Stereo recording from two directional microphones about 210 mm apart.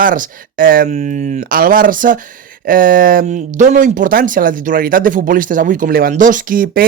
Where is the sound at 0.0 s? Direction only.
40° right (ahead or behind).